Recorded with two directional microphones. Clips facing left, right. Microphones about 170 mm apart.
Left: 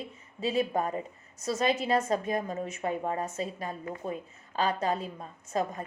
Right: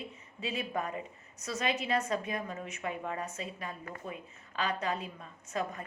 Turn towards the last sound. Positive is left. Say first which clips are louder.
# left 5 dB
turn(degrees=40)  # may be behind; listen again after turning